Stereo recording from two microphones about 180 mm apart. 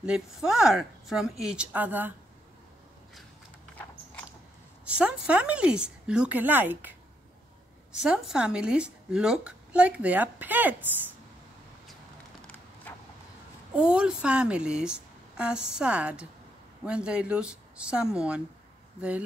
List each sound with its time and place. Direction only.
0.0 s speech: 5° right (ahead or behind)
4.8 s speech: 5° right (ahead or behind)
13.7 s speech: 5° right (ahead or behind)